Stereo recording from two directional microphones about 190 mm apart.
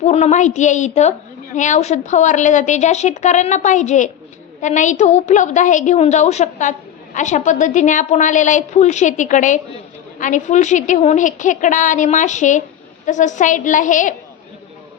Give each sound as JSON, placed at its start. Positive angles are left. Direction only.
{"t": 0.0, "sound": "a woman's voice", "side_deg": 35}